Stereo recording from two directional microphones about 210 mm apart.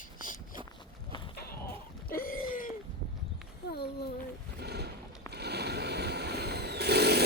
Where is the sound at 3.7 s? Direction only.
50° left (ahead or behind).